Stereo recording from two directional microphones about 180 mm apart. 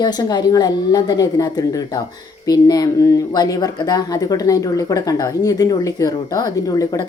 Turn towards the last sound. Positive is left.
turn(degrees=20)  # may be behind; listen again after turning